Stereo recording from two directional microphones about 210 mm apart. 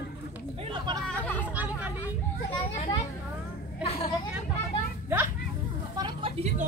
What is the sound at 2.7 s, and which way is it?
Speech, 35° left (ahead or behind).